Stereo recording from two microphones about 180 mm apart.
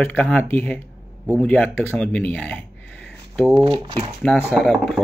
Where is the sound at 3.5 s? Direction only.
30° right (ahead or behind).